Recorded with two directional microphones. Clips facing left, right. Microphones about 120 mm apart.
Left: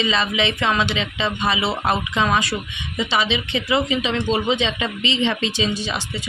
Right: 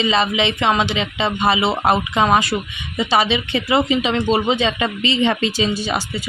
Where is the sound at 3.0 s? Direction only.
40° right (ahead or behind).